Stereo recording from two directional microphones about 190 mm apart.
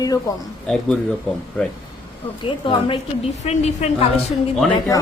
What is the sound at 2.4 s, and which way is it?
A woman's voice, 25° left (ahead or behind).